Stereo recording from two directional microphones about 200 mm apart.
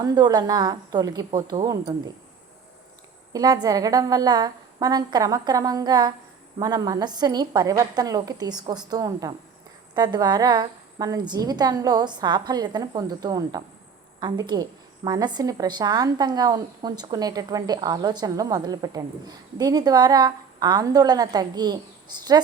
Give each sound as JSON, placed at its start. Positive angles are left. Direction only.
{"t": 0.0, "sound": "a woman's voice", "side_deg": -20}
{"t": 3.3, "sound": "a woman's voice", "side_deg": -20}